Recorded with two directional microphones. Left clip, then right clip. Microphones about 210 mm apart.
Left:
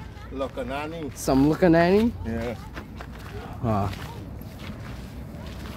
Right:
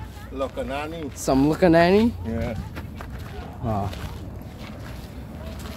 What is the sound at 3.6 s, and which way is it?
Speech, 25° left (ahead or behind).